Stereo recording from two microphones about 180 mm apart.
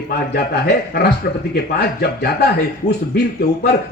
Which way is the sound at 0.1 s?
65° left (ahead or behind).